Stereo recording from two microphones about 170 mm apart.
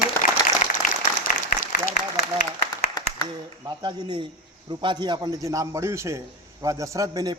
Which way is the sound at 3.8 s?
25° right (ahead or behind).